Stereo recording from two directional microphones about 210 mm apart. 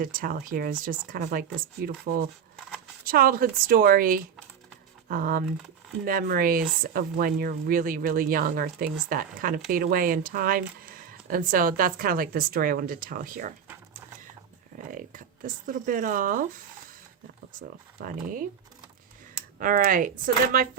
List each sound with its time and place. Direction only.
0.0 s speech: 40° right (ahead or behind)
14.8 s speech: 40° right (ahead or behind)
18.0 s speech: 40° right (ahead or behind)
19.5 s speech: 40° right (ahead or behind)